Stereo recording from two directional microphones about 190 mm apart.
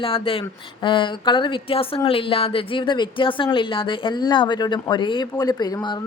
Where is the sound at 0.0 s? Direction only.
30° left (ahead or behind).